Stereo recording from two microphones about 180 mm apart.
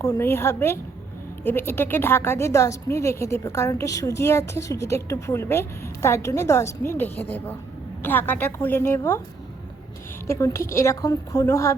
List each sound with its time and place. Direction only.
0.0 s a woman's voice: 15° left (ahead or behind)
10.2 s a woman's voice: 15° left (ahead or behind)